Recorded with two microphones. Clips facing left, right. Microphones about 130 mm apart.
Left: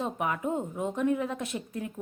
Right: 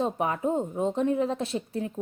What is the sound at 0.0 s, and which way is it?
A woman's voice, 30° right (ahead or behind).